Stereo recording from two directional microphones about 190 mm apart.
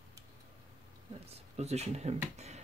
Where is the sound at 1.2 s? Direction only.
35° right (ahead or behind).